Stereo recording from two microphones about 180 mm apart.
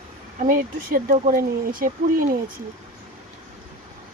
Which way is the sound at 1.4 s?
50° right (ahead or behind).